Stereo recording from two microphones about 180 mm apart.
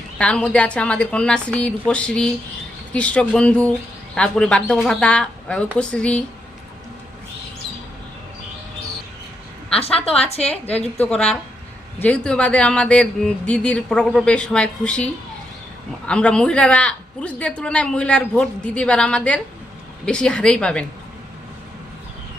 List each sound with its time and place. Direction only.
0.2 s speech: 5° left (ahead or behind)
10.2 s a woman's voice: 35° left (ahead or behind)
11.0 s speech: 5° left (ahead or behind)